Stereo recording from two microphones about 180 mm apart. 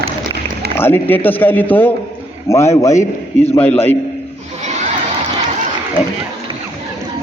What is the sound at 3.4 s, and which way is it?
Speech, 35° left (ahead or behind).